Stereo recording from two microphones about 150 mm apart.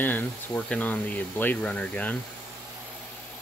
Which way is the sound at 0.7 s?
10° left (ahead or behind).